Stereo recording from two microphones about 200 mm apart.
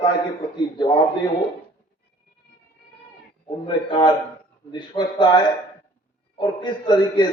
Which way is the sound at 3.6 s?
20° left (ahead or behind).